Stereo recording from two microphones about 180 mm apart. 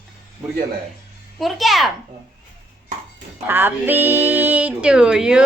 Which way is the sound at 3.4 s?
10° right (ahead or behind).